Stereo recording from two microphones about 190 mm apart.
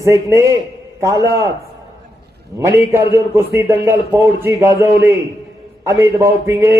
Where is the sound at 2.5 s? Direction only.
15° right (ahead or behind).